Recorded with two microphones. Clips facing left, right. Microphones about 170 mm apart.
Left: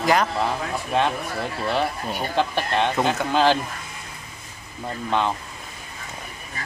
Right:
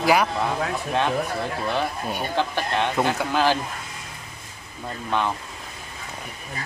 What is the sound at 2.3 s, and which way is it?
Speech, 15° left (ahead or behind).